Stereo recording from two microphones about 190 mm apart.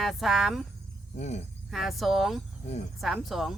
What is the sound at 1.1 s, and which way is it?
Speech, 35° left (ahead or behind).